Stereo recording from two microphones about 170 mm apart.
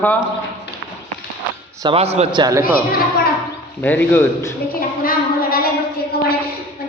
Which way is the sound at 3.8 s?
10° left (ahead or behind).